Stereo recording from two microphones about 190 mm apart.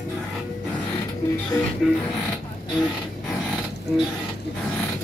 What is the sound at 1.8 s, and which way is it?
Speech, centre (ahead or behind).